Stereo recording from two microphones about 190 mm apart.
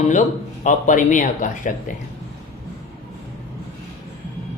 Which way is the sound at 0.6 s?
40° left (ahead or behind).